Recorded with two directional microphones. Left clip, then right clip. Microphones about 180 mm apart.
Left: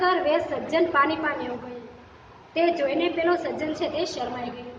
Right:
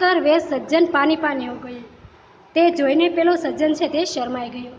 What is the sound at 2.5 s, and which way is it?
A woman's voice, 60° right (ahead or behind).